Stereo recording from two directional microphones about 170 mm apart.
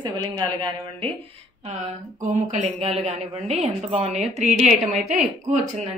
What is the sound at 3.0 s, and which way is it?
A woman's voice, 40° right (ahead or behind).